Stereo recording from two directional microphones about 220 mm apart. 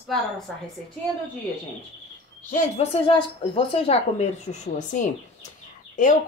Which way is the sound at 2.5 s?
30° left (ahead or behind).